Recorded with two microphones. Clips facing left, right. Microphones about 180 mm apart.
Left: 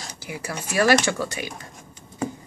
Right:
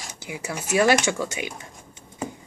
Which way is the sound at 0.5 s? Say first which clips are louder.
Right 2 dB; 5° right (ahead or behind).